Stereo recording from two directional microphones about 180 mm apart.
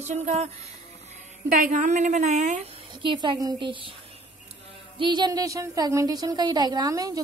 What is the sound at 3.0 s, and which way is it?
Speech, 25° right (ahead or behind).